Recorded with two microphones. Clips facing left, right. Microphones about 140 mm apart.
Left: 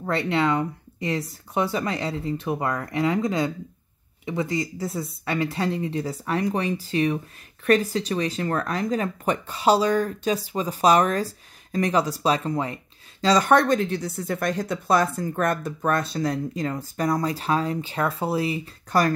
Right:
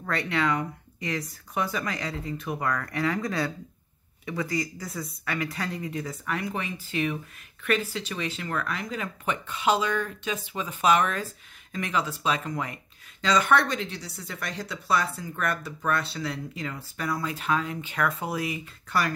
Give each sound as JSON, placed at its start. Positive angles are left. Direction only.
{"t": 0.0, "sound": "speech", "side_deg": 25}